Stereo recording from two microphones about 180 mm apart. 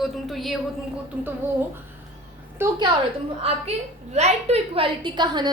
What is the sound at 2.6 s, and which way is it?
Speech, 10° right (ahead or behind).